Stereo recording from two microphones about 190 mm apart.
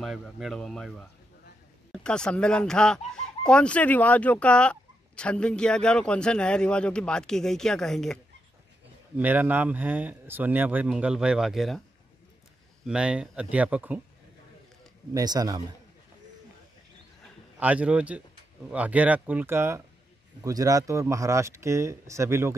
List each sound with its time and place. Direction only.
0.0 s speech: centre (ahead or behind)
9.1 s speech: 10° right (ahead or behind)
12.8 s speech: 5° right (ahead or behind)
15.1 s speech: 20° right (ahead or behind)
17.6 s speech: 5° right (ahead or behind)